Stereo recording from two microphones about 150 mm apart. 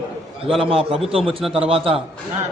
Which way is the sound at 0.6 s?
40° right (ahead or behind).